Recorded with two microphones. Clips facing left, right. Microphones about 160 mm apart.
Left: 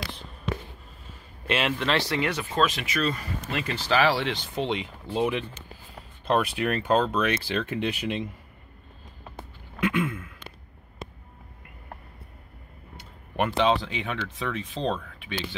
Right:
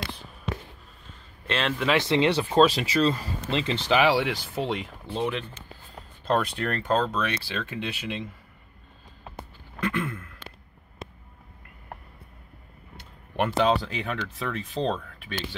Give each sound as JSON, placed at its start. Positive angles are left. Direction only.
{"t": 1.5, "sound": "speech", "side_deg": 10}
{"t": 2.0, "sound": "speech", "side_deg": -20}
{"t": 9.8, "sound": "a sound", "side_deg": 5}
{"t": 13.4, "sound": "speech", "side_deg": 0}